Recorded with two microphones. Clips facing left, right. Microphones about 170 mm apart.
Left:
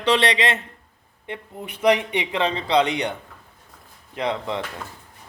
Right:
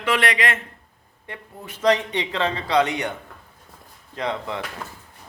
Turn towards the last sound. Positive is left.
turn(degrees=20)  # may be behind; listen again after turning